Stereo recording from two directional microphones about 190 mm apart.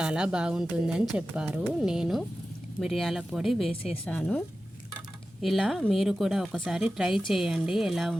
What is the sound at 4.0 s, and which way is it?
A woman's voice, 5° left (ahead or behind).